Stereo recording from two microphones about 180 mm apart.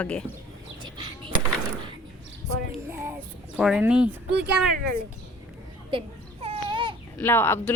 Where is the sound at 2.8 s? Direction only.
15° right (ahead or behind).